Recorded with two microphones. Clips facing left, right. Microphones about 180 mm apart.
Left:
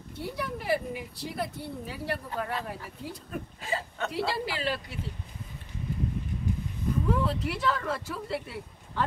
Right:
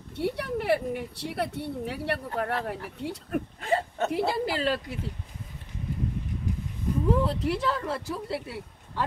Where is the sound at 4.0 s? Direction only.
50° right (ahead or behind).